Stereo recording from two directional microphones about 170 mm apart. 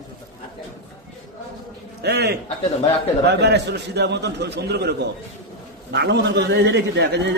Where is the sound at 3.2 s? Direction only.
85° right.